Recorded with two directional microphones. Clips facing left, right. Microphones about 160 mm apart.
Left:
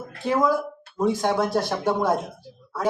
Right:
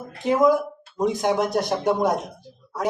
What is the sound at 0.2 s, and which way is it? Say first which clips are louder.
Speech: right 3 dB; 20° right (ahead or behind).